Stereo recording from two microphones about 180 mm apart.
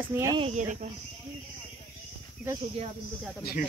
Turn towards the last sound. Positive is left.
turn(degrees=55)  # may be behind; listen again after turning